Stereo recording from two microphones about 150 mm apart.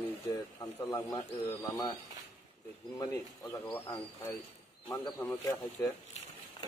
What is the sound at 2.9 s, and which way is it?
Speech, 25° left (ahead or behind).